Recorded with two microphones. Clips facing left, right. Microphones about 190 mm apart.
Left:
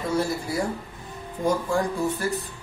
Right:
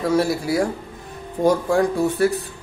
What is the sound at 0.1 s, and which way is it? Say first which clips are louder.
Speech: right 5 dB; 80° right.